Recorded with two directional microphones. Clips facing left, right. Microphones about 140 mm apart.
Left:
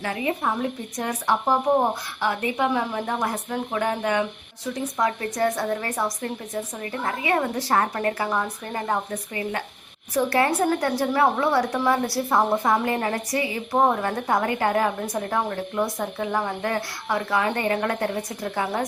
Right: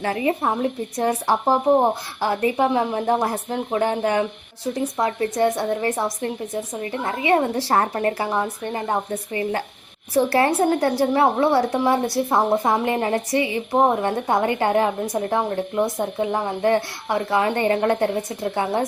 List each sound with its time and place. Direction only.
0.0 s a woman's voice: 35° right (ahead or behind)